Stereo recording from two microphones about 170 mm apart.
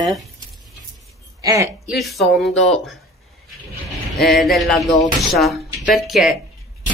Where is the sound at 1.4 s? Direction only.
20° right (ahead or behind).